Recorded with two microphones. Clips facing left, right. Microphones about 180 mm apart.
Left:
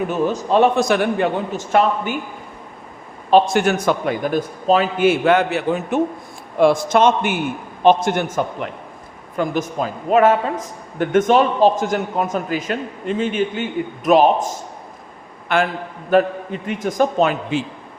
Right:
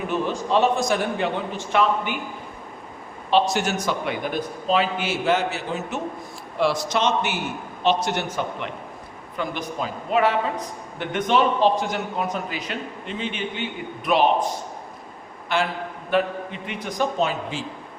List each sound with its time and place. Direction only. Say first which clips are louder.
0.1 s a man's voice: left 2 dB; 45° left (ahead or behind); by 1.3 s 60° left (ahead or behind)
1.5 s a man's voice: left 3 dB; 45° left (ahead or behind)
3.2 s a man's voice: left 6 dB; 50° left (ahead or behind)
15.5 s a man's voice: left 5 dB; 55° left (ahead or behind)
16.0 s a man's voice: left 7 dB; 45° left (ahead or behind); by 17.7 s 60° left (ahead or behind)